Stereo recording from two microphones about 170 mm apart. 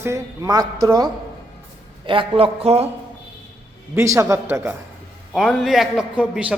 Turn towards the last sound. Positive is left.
turn(degrees=-5)  # may be behind; listen again after turning